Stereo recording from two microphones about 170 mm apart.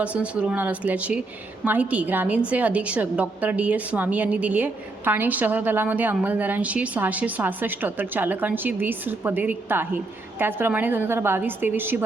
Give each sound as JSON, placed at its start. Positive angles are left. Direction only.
{"t": 0.0, "sound": "a woman's voice", "side_deg": -5}